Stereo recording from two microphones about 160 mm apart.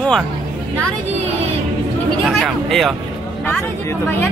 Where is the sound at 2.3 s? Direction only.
Centre (ahead or behind).